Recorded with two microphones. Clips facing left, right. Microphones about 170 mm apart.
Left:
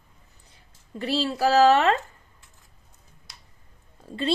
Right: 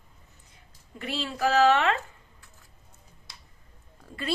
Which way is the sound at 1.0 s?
35° left (ahead or behind).